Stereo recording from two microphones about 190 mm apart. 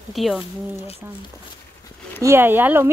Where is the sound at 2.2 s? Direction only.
10° right (ahead or behind).